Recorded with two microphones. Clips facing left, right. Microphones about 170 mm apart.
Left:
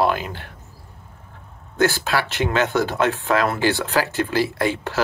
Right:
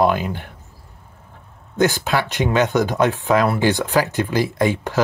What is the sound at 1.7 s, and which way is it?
Speech, 20° right (ahead or behind).